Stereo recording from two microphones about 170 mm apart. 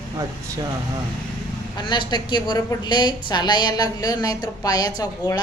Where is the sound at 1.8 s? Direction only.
25° left (ahead or behind).